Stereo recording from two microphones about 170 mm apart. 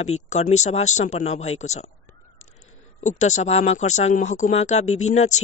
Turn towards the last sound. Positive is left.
turn(degrees=40)  # may be behind; listen again after turning